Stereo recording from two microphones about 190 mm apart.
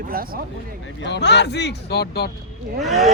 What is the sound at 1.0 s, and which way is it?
Speech, 65° left (ahead or behind).